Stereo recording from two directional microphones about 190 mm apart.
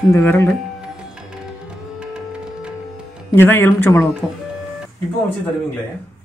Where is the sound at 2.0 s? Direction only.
5° right (ahead or behind).